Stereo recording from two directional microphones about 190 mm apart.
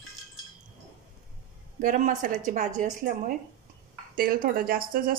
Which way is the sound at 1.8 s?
45° right (ahead or behind).